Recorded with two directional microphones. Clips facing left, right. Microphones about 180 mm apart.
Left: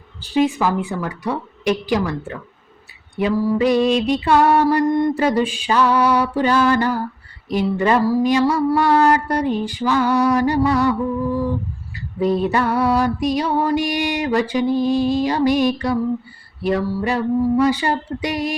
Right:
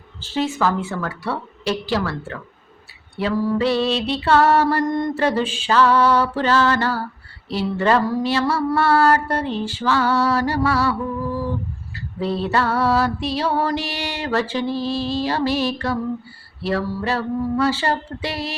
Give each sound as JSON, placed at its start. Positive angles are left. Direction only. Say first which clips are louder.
{"t": 0.2, "sound": "music", "louder": "left 4 dB", "side_deg": 15}
{"t": 11.9, "sound": "music", "louder": "left 5 dB", "side_deg": 15}